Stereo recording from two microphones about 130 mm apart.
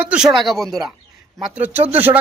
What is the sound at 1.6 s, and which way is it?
Speech, 15° right (ahead or behind).